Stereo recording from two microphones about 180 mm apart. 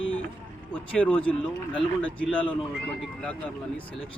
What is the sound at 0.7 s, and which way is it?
Speech, 5° left (ahead or behind).